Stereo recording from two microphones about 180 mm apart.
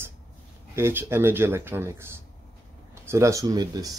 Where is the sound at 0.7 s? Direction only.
15° right (ahead or behind).